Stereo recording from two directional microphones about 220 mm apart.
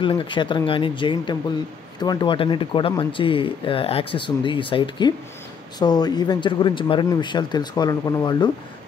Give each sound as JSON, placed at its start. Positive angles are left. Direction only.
{"t": 0.0, "sound": "speech", "side_deg": 20}